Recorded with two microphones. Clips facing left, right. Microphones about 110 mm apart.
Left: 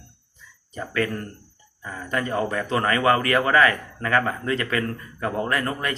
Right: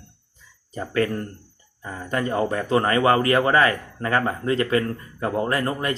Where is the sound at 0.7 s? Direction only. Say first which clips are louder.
Right 3 dB; 30° right (ahead or behind).